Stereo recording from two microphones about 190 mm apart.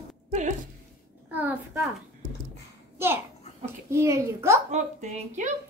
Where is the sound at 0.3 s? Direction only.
40° right (ahead or behind).